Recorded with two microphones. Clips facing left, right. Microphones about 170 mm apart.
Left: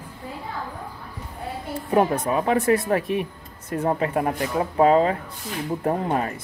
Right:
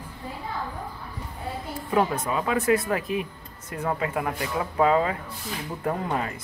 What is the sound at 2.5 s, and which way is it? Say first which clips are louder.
Speech: left 3 dB; 35° left (ahead or behind).